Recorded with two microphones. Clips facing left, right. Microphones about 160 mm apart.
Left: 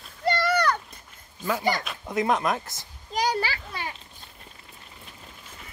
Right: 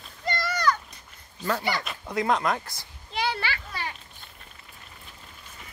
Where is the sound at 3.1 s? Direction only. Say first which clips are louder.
Left 3 dB; 40° left (ahead or behind).